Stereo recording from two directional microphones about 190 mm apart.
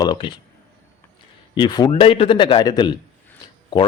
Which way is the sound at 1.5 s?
20° left (ahead or behind).